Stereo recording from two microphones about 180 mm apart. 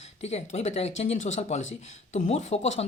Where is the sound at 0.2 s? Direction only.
35° left (ahead or behind).